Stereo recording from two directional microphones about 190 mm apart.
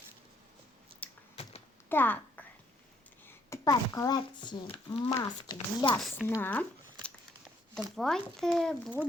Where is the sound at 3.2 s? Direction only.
15° left (ahead or behind).